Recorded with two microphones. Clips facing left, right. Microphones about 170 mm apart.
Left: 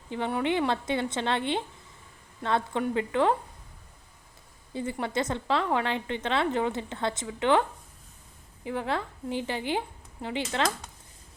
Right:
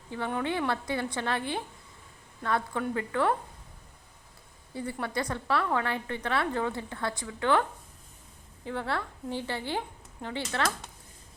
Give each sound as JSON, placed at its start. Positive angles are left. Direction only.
{"t": 0.1, "sound": "a woman's voice", "side_deg": 15}
{"t": 4.7, "sound": "a woman's voice", "side_deg": 20}
{"t": 8.6, "sound": "speech", "side_deg": 15}